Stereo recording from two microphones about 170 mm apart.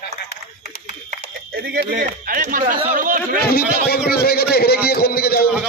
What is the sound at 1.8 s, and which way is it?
Speech, 60° right (ahead or behind).